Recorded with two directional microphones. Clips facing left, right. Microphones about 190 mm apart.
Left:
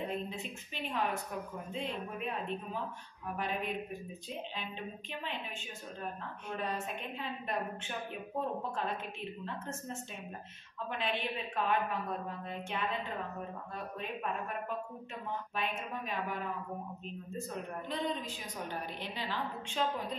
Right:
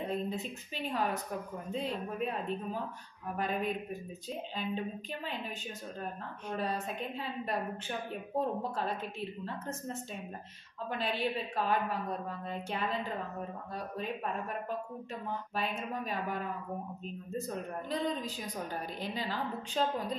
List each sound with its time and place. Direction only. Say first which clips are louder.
0.1 s a woman's voice: right 4 dB; 40° right (ahead or behind)
6.5 s a woman's voice: right 2 dB; 35° right (ahead or behind)
10.9 s a woman's voice: right 3 dB; 35° right (ahead or behind)
15.5 s a woman's voice: right 3 dB; 40° right (ahead or behind)